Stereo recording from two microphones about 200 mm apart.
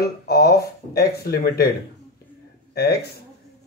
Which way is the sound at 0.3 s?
50° left (ahead or behind).